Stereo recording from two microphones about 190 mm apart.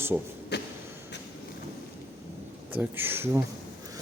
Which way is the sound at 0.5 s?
60° left (ahead or behind).